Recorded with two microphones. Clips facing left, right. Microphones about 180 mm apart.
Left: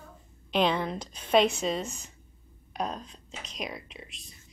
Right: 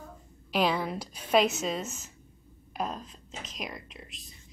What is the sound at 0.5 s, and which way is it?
Speech, 5° right (ahead or behind).